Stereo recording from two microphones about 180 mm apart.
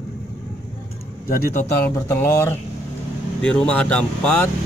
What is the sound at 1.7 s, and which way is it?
Speech, 15° left (ahead or behind).